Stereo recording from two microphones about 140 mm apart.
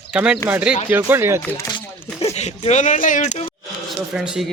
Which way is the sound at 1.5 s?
30° left (ahead or behind).